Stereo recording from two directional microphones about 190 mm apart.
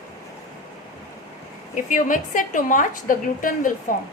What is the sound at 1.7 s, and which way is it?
A woman's voice, 45° left (ahead or behind).